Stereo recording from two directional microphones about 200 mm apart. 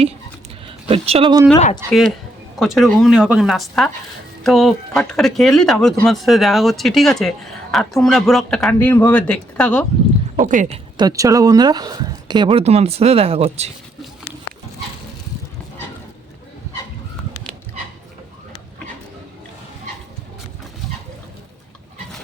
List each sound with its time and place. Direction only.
0.9 s speech: 30° right (ahead or behind); by 2.0 s 15° right (ahead or behind)
2.6 s speech: centre (ahead or behind)
10.3 s speech: 40° right (ahead or behind)
10.9 s speech: 20° right (ahead or behind)